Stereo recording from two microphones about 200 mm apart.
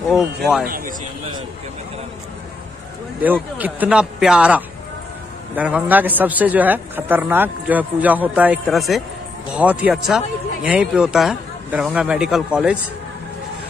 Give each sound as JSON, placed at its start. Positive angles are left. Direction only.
{"t": 0.1, "sound": "speech", "side_deg": -5}
{"t": 0.7, "sound": "a man's voice", "side_deg": -45}
{"t": 3.5, "sound": "a man's voice", "side_deg": -10}